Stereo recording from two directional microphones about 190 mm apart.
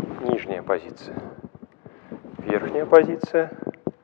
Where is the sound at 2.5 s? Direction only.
15° left (ahead or behind).